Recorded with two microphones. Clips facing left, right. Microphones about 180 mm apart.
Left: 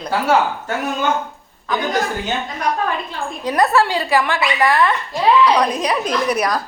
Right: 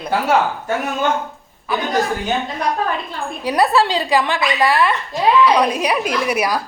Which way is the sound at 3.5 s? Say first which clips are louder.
Even; 10° right (ahead or behind).